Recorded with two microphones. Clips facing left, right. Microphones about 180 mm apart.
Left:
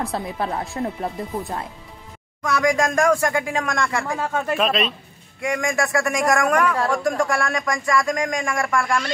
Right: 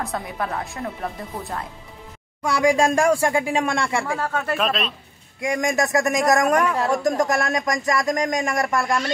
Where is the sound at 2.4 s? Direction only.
30° right (ahead or behind).